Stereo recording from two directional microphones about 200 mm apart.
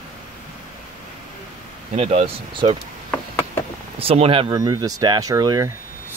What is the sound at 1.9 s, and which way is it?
Speech, 30° right (ahead or behind).